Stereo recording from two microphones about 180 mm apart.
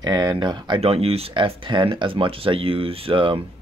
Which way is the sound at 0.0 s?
20° right (ahead or behind).